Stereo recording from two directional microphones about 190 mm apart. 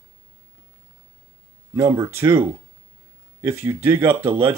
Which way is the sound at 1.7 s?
15° right (ahead or behind).